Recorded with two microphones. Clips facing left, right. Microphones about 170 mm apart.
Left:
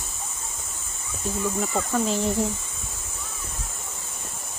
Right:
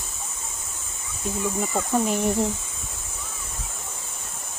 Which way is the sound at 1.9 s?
15° right (ahead or behind).